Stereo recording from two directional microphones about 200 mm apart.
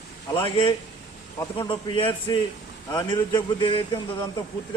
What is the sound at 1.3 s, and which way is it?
A man's voice, 20° left (ahead or behind).